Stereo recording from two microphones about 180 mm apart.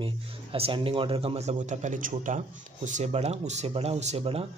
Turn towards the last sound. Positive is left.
turn(degrees=-35)  # may be behind; listen again after turning